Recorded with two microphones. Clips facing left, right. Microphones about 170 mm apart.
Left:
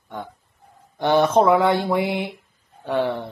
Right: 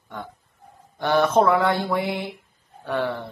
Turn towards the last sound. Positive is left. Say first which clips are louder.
# left 3 dB
turn(degrees=20)  # may be behind; listen again after turning